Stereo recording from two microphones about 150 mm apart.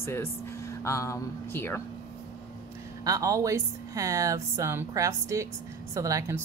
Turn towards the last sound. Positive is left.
turn(degrees=-20)  # may be behind; listen again after turning